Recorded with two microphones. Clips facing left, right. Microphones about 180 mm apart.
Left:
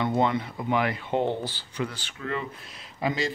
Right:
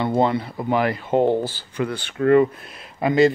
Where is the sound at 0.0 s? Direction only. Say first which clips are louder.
Right 5 dB; 30° right (ahead or behind).